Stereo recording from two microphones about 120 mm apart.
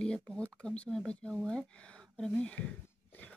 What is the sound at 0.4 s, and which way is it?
Speech, 10° left (ahead or behind).